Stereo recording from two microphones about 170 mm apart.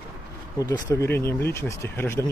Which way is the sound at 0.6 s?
20° left (ahead or behind).